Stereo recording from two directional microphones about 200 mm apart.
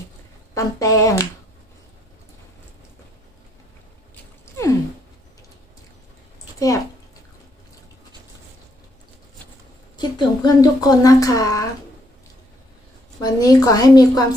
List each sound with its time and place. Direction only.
0.6 s speech: 15° left (ahead or behind)
4.1 s a sound: 15° left (ahead or behind)
9.9 s speech: 20° left (ahead or behind)
13.2 s a woman's voice: 20° left (ahead or behind)